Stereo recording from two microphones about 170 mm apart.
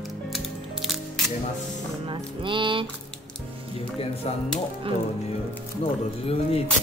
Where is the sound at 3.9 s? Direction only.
35° left (ahead or behind).